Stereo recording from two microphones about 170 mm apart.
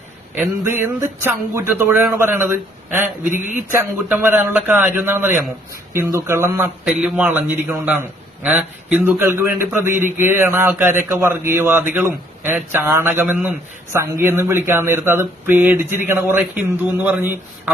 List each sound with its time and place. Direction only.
0.3 s a man's voice: 10° right (ahead or behind)